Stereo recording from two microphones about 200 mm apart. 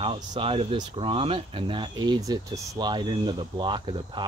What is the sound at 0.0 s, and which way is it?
Speech, 25° right (ahead or behind).